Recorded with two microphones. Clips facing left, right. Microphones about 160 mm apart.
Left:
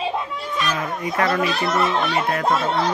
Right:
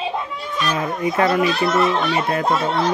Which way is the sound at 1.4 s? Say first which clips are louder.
Right 3 dB; centre (ahead or behind).